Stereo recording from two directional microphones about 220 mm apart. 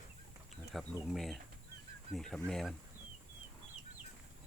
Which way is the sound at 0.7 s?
Centre (ahead or behind).